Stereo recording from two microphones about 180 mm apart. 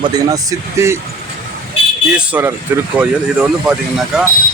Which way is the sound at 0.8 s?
15° right (ahead or behind).